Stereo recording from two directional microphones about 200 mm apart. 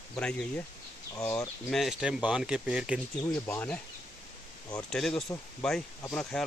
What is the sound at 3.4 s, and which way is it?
Speech, 10° left (ahead or behind).